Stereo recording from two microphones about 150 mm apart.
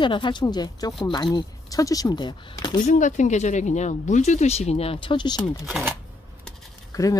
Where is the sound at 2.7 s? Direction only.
55° left (ahead or behind); by 5.3 s 30° left (ahead or behind).